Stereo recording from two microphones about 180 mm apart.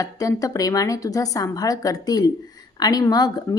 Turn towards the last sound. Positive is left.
turn(degrees=20)  # may be behind; listen again after turning